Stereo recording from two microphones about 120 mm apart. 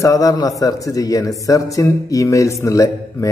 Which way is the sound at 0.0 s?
25° left (ahead or behind).